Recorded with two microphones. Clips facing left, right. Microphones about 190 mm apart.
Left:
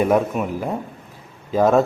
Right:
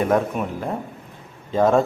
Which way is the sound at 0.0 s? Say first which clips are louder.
Left 2 dB; 10° left (ahead or behind).